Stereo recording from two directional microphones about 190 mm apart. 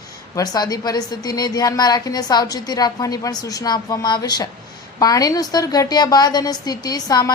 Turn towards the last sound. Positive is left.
turn(degrees=20)  # may be behind; listen again after turning